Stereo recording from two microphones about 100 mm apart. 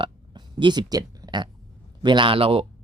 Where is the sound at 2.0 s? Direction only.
50° right (ahead or behind); by 2.7 s 65° right (ahead or behind).